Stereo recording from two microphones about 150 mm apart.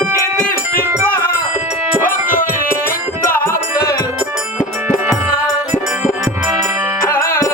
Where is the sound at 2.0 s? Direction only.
65° left (ahead or behind).